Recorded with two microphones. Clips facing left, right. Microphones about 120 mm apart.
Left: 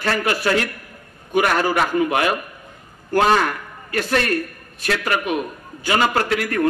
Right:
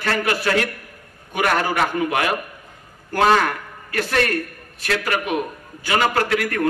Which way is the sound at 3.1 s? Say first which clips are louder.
Even; 25° left (ahead or behind).